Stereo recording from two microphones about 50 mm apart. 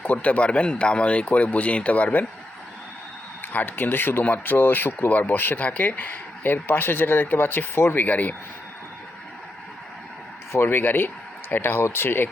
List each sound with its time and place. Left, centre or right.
0.0 s speech: left
3.5 s speech: left
5.5 s speech: left
8.0 s speech: left
10.5 s speech: left